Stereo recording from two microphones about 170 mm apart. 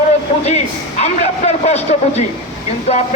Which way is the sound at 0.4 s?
40° left (ahead or behind).